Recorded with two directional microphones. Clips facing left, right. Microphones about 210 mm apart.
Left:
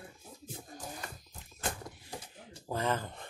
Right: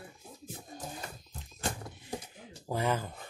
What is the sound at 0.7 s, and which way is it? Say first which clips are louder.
Music: right 3 dB; 25° right (ahead or behind).